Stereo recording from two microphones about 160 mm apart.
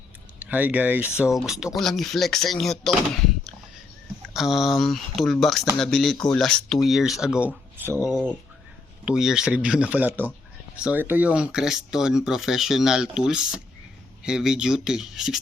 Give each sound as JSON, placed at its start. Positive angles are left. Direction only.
{"t": 0.3, "sound": "speech", "side_deg": -10}
{"t": 4.4, "sound": "speech", "side_deg": 0}
{"t": 9.0, "sound": "speech", "side_deg": -5}